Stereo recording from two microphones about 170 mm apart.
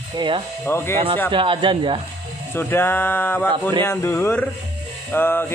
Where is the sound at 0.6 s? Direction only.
15° left (ahead or behind).